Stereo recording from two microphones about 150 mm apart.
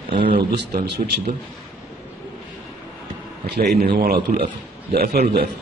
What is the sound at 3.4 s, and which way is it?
A man's voice, 90° right.